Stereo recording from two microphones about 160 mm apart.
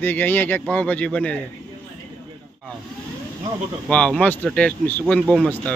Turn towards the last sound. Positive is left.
turn(degrees=5)  # may be behind; listen again after turning